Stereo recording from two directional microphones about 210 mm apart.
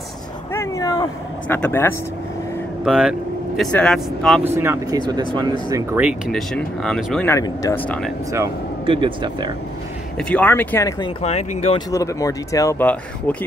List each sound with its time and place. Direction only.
0.5 s a sound: 15° left (ahead or behind)
1.5 s speech: 10° left (ahead or behind)
2.8 s speech: 5° right (ahead or behind)
4.6 s speech: 15° right (ahead or behind)
5.9 s speech: 5° right (ahead or behind)
7.2 s speech: 15° left (ahead or behind)
8.3 s speech: 20° right (ahead or behind)
10.1 s speech: 5° left (ahead or behind)
11.2 s speech: 30° left (ahead or behind)
11.9 s speech: 15° left (ahead or behind)